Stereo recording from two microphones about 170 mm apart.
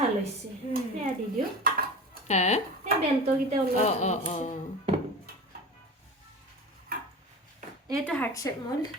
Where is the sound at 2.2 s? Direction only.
40° left (ahead or behind).